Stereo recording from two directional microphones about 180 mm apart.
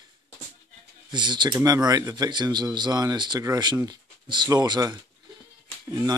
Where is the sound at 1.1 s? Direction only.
25° right (ahead or behind).